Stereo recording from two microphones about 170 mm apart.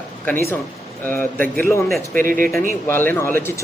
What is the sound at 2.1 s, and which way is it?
Speech, 55° right (ahead or behind).